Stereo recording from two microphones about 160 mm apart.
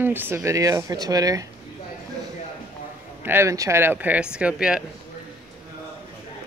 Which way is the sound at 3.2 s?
15° right (ahead or behind).